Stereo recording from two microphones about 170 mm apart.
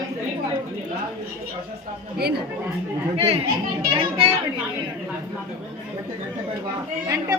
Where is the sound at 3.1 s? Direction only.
35° right (ahead or behind).